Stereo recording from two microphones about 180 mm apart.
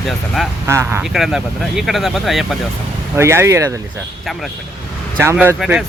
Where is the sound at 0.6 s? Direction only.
15° right (ahead or behind).